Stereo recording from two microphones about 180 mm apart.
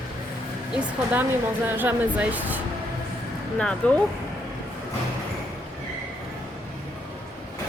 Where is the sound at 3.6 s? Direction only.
5° left (ahead or behind).